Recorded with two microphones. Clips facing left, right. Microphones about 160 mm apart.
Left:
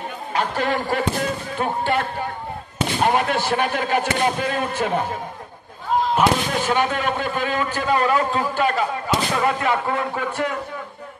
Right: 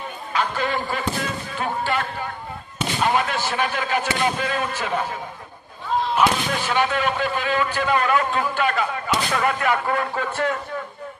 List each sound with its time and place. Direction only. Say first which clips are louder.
0.3 s a man's voice: left 2 dB; 60° left (ahead or behind)
1.2 s speech: left 3 dB; 50° left (ahead or behind)
6.1 s speech: even; 40° left (ahead or behind)
9.4 s speech: left 1 dB; 25° left (ahead or behind)